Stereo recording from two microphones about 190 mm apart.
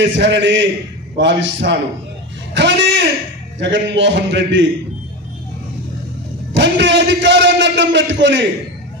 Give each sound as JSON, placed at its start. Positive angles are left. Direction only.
{"t": 0.0, "sound": "a man's voice", "side_deg": -70}
{"t": 6.5, "sound": "a man's voice", "side_deg": -70}